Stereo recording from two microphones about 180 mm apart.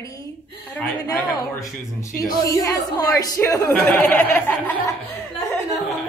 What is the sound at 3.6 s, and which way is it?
Speech, 10° left (ahead or behind).